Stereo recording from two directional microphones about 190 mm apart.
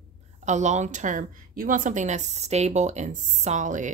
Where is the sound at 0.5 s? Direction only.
40° right (ahead or behind).